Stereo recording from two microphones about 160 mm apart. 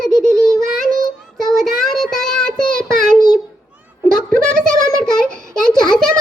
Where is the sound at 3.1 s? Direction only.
25° left (ahead or behind).